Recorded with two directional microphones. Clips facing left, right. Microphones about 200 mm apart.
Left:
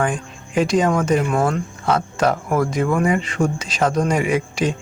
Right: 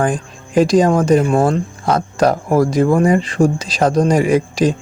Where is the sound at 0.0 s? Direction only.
35° right (ahead or behind).